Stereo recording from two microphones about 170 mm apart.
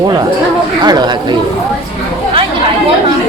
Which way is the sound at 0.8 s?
25° right (ahead or behind).